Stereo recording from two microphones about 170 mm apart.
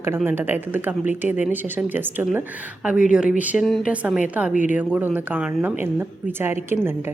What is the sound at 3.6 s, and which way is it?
Speech, 5° left (ahead or behind).